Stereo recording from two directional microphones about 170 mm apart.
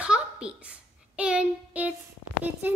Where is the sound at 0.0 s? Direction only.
5° right (ahead or behind).